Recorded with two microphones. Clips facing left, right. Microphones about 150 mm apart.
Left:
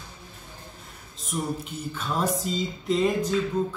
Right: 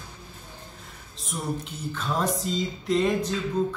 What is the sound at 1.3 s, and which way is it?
Music, centre (ahead or behind).